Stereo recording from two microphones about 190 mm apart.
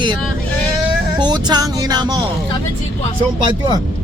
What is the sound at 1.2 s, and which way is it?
Speech, 20° right (ahead or behind).